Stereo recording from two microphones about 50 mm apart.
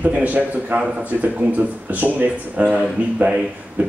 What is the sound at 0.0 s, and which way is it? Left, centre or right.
Speech, right.